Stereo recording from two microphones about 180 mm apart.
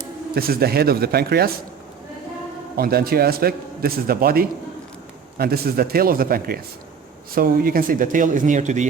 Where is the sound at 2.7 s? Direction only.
55° right (ahead or behind).